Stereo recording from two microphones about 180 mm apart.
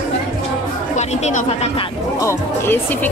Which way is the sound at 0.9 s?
40° left (ahead or behind).